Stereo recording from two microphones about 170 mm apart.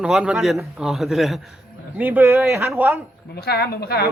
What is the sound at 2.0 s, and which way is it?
Speech, 10° right (ahead or behind).